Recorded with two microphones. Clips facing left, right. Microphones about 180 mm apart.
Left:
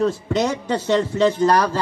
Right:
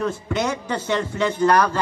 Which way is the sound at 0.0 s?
30° left (ahead or behind).